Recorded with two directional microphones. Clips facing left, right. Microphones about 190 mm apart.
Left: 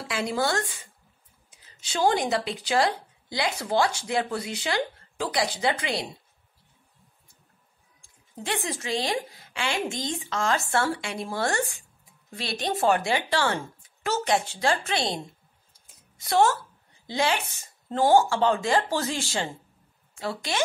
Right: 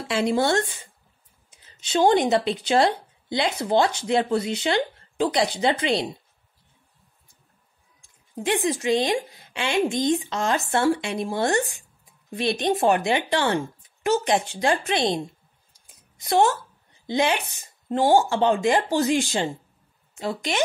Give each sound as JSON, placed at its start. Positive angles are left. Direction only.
{"t": 0.1, "sound": "a woman's voice", "side_deg": -25}
{"t": 1.8, "sound": "a woman's voice", "side_deg": -20}
{"t": 8.0, "sound": "a woman's voice", "side_deg": -20}
{"t": 16.2, "sound": "a woman's voice", "side_deg": -20}